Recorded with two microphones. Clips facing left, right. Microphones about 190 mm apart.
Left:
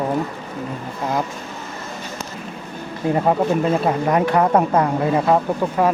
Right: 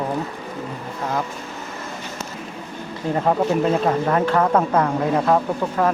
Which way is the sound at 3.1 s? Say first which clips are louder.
Left 1 dB; 5° left (ahead or behind).